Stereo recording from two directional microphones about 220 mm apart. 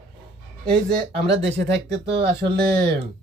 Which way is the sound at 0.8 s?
50° right (ahead or behind).